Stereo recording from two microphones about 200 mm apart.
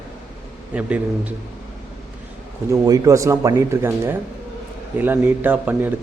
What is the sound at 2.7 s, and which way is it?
A man's voice, 20° right (ahead or behind).